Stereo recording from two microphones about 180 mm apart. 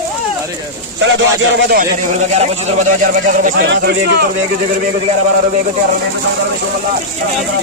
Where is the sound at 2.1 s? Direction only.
40° right (ahead or behind).